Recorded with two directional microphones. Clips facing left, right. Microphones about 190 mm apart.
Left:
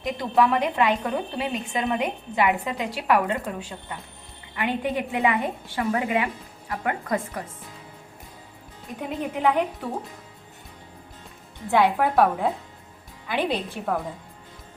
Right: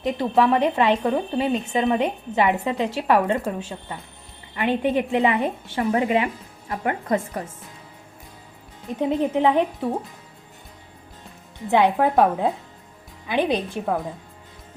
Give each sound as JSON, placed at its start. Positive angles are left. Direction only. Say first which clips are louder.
{"t": 0.2, "sound": "a woman's voice", "louder": "right 2 dB", "side_deg": -20}
{"t": 4.5, "sound": "a woman's voice", "louder": "right 5 dB", "side_deg": -20}
{"t": 9.0, "sound": "a woman's voice", "louder": "right 7 dB", "side_deg": -25}
{"t": 11.7, "sound": "a woman's voice", "louder": "right 2 dB", "side_deg": -20}